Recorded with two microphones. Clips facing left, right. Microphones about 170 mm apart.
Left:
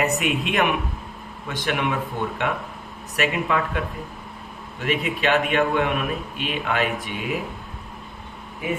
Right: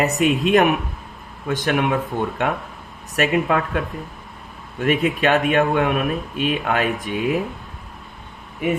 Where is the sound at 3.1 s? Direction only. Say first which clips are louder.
Right 4 dB; 45° right (ahead or behind).